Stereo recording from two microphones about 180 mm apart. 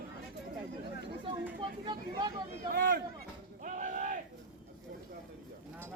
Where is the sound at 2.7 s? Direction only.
55° right (ahead or behind).